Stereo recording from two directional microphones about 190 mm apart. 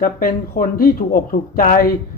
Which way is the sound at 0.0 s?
50° left (ahead or behind).